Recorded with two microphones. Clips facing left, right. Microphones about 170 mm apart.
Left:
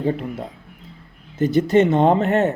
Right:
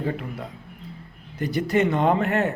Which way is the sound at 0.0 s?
25° left (ahead or behind).